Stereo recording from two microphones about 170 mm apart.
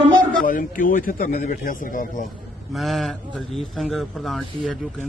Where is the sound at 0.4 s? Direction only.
50° left (ahead or behind).